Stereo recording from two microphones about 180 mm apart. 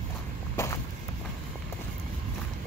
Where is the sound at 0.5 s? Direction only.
15° left (ahead or behind).